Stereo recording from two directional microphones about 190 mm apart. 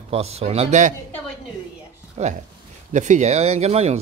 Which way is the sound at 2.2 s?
35° right (ahead or behind).